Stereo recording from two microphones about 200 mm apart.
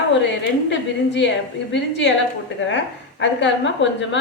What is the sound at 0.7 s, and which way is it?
A woman's voice, 65° left (ahead or behind).